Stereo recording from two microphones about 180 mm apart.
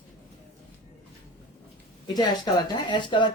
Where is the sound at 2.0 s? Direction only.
20° left (ahead or behind).